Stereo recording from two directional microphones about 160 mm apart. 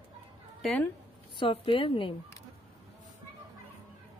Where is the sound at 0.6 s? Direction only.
Centre (ahead or behind).